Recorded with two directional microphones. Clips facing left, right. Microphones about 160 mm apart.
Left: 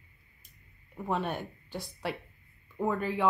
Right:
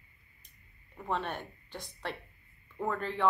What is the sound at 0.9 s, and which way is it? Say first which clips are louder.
A woman's voice: left 3 dB; 10° left (ahead or behind).